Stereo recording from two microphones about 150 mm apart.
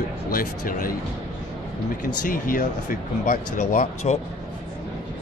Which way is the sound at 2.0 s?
65° left (ahead or behind).